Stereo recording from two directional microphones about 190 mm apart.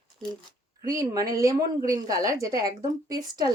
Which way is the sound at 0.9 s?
20° right (ahead or behind).